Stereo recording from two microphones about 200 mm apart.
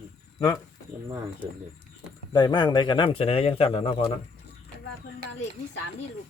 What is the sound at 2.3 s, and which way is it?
Speech, 20° left (ahead or behind).